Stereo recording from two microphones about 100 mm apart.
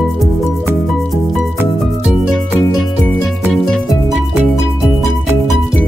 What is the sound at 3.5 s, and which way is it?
Music, 5° left (ahead or behind).